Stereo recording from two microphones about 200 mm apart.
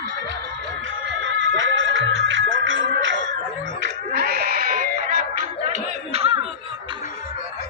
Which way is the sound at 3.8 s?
55° right (ahead or behind).